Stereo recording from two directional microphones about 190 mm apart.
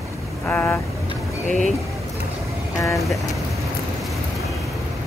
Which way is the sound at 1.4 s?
40° left (ahead or behind).